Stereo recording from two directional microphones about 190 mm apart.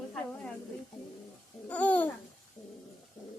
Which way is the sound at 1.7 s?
5° left (ahead or behind).